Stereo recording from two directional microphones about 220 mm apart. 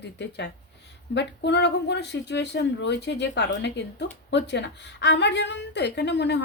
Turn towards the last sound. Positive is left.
turn(degrees=50)  # may be behind; listen again after turning